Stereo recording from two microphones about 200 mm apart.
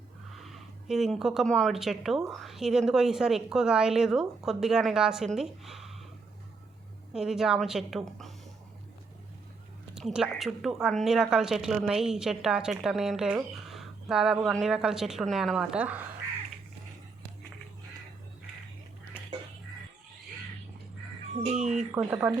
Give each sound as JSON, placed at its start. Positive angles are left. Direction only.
{"t": 0.4, "sound": "a woman's voice", "side_deg": 0}
{"t": 7.1, "sound": "a woman's voice", "side_deg": 0}
{"t": 9.9, "sound": "a woman's voice", "side_deg": -5}
{"t": 21.4, "sound": "speech", "side_deg": -35}
{"t": 21.9, "sound": "speech", "side_deg": -10}